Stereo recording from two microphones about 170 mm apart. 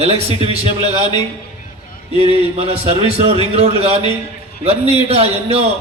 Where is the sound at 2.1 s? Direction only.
35° right (ahead or behind).